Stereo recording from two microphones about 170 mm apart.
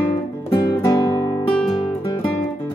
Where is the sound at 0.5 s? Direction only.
25° left (ahead or behind).